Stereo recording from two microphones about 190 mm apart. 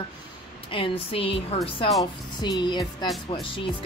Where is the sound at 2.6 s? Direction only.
25° left (ahead or behind).